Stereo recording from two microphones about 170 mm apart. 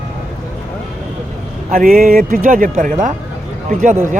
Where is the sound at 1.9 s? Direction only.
60° right (ahead or behind).